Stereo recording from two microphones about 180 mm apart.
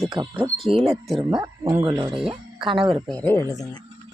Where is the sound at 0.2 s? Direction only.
25° right (ahead or behind).